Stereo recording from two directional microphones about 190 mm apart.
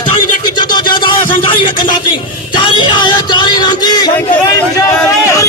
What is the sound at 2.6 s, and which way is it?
Music, 25° left (ahead or behind).